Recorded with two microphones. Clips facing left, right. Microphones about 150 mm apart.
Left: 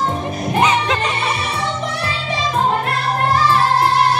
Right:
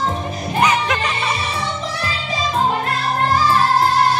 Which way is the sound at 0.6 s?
25° left (ahead or behind).